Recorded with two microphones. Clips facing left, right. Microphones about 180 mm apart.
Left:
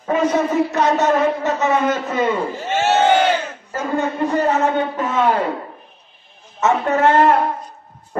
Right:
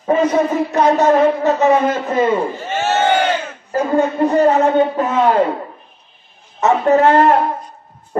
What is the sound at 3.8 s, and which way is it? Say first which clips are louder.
A man's voice: right 5 dB; 35° right (ahead or behind).